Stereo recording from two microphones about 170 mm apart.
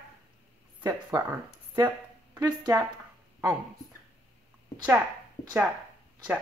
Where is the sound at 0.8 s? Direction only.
20° right (ahead or behind).